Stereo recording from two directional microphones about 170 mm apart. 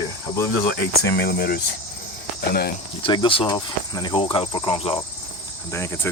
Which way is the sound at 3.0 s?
30° left (ahead or behind).